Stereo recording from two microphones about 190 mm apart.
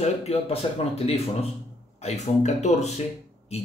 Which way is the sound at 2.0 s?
35° left (ahead or behind).